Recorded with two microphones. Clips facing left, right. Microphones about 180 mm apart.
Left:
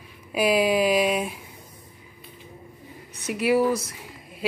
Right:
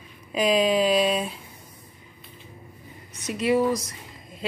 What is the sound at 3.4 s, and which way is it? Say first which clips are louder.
Speech: left 1 dB; 5° left (ahead or behind).